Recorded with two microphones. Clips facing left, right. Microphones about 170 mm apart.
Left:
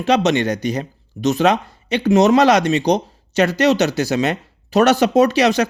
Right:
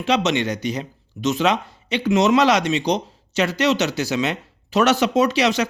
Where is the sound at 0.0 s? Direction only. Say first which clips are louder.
Left 4 dB; 40° left (ahead or behind).